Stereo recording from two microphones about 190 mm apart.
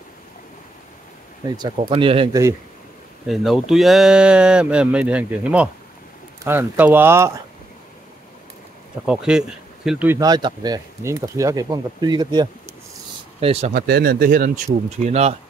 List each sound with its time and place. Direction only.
2.0 s speech: 30° right (ahead or behind)
3.3 s speech: centre (ahead or behind)
9.0 s speech: 5° right (ahead or behind); by 13.7 s 30° right (ahead or behind)
13.7 s speech: 50° right (ahead or behind)
15.0 s speech: 35° right (ahead or behind)